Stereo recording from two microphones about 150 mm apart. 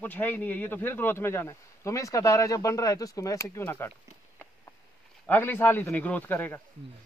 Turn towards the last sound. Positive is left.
turn(degrees=15)  # may be behind; listen again after turning